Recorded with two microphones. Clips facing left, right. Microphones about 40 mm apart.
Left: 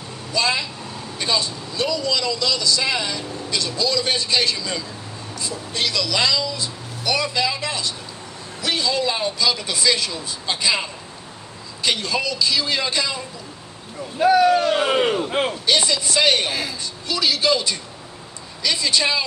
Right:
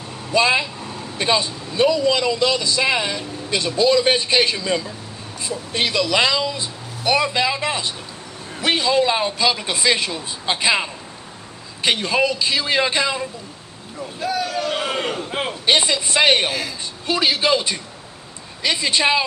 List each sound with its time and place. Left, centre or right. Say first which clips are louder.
0.3 s a man's voice: right 5 dB; right
14.2 s speech: left 8 dB; left
14.7 s speech: left 5 dB; centre
15.6 s a man's voice: right 2 dB; right